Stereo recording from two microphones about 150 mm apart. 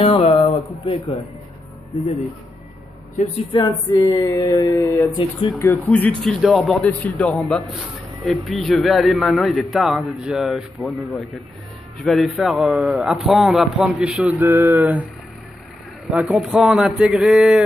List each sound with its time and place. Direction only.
0.0 s speech: 40° left (ahead or behind)
3.5 s a man's voice: 25° left (ahead or behind); by 14.3 s 5° right (ahead or behind)
14.3 s a sound: 15° right (ahead or behind)
16.1 s a man's voice: 5° right (ahead or behind)